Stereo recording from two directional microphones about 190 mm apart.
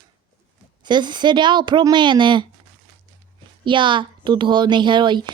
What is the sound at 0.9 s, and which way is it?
Speech, 25° right (ahead or behind).